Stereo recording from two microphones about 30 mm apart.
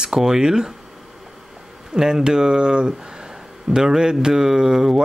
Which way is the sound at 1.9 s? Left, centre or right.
Right.